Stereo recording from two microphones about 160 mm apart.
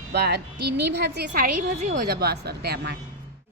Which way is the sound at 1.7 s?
45° right (ahead or behind).